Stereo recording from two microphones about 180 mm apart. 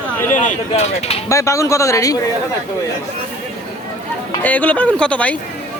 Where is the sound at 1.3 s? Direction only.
15° left (ahead or behind).